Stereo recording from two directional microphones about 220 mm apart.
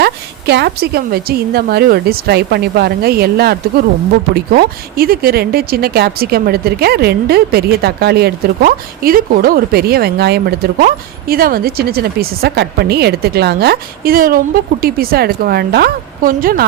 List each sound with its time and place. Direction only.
0.0 s speech: 50° right (ahead or behind)